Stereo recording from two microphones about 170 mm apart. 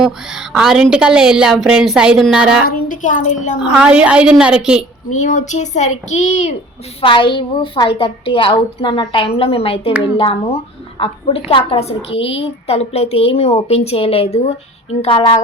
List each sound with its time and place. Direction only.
0.0 s a woman's voice: centre (ahead or behind)
2.6 s a child's voice: 50° left (ahead or behind)
3.6 s a woman's voice: 5° right (ahead or behind)
5.1 s a child's voice: 45° left (ahead or behind)
7.0 s a woman's voice: 30° left (ahead or behind)